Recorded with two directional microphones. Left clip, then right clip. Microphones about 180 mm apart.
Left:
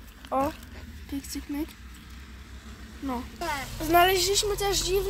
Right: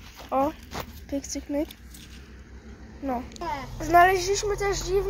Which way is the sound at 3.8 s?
20° left (ahead or behind).